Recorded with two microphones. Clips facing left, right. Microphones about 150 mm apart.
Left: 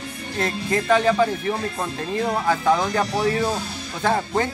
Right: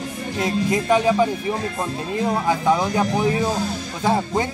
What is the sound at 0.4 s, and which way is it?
Speech, 15° right (ahead or behind).